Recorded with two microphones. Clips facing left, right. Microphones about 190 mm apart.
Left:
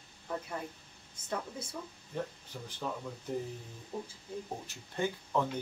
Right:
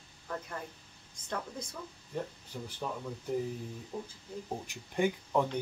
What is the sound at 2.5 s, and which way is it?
Speech, 5° right (ahead or behind).